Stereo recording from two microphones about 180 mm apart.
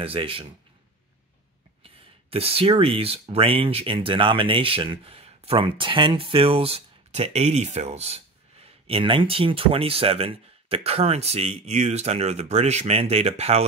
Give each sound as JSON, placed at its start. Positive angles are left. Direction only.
{"t": 0.0, "sound": "speech", "side_deg": -30}
{"t": 2.3, "sound": "speech", "side_deg": -30}